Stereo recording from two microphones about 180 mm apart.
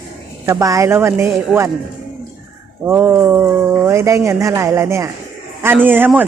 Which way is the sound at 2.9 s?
10° right (ahead or behind).